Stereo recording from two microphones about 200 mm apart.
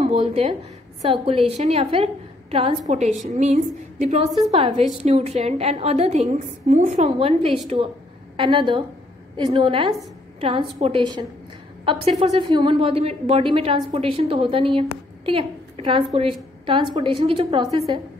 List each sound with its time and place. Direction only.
0.0 s a woman's voice: 30° right (ahead or behind)